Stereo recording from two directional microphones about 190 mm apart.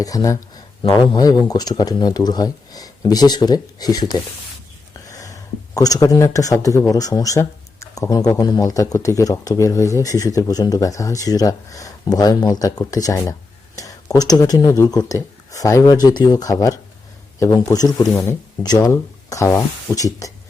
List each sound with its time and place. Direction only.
0.0 s speech: 20° left (ahead or behind)